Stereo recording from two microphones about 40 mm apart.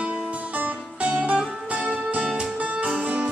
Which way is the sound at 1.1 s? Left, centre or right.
Right.